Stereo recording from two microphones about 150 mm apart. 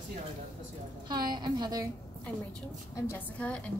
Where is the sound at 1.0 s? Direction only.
30° right (ahead or behind).